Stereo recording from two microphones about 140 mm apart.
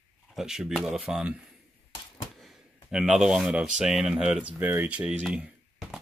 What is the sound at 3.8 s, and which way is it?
Speech, 5° right (ahead or behind).